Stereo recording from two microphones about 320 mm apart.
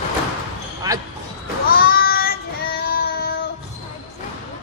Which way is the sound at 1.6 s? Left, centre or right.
Left.